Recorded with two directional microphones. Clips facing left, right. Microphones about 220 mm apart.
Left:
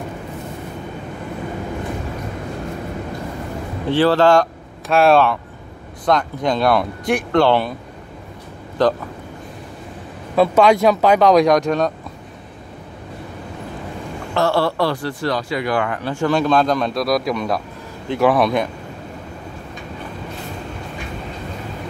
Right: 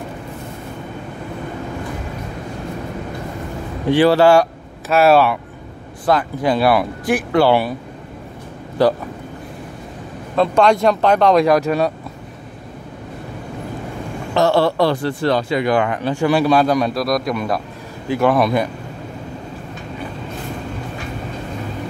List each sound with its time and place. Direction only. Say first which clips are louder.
3.9 s speech: right 2 dB; 15° right (ahead or behind)
8.8 s speech: right 2 dB; 10° right (ahead or behind)
10.3 s speech: left 1 dB; 5° left (ahead or behind)
14.3 s speech: right 3 dB; 20° right (ahead or behind); by 18.7 s centre (ahead or behind)